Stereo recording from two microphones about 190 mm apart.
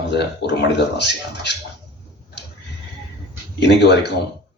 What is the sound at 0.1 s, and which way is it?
Speech, 65° left (ahead or behind).